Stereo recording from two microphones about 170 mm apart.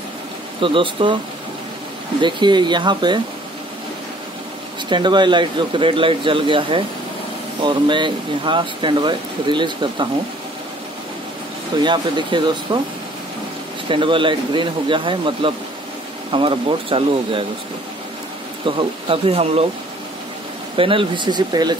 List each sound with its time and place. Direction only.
0.6 s speech: 30° right (ahead or behind)
2.2 s speech: 25° right (ahead or behind)
4.8 s speech: 25° right (ahead or behind)
11.8 s speech: 25° right (ahead or behind)
13.8 s speech: 30° right (ahead or behind)
18.8 s speech: 35° right (ahead or behind)
20.7 s speech: 30° right (ahead or behind)